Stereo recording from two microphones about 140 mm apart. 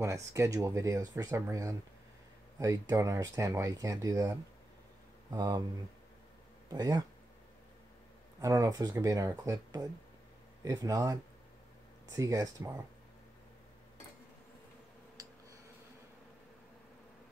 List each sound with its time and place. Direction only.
0.0 s speech: 20° right (ahead or behind)
6.7 s speech: 30° right (ahead or behind)
8.4 s speech: 25° right (ahead or behind)
12.2 s speech: 25° right (ahead or behind)
15.2 s a sound: 25° right (ahead or behind)